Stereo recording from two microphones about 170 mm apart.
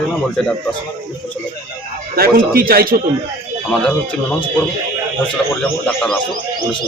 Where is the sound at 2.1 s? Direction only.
60° right (ahead or behind).